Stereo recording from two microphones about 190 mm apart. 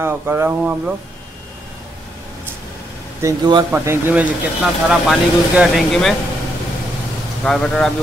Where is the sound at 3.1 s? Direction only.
20° right (ahead or behind).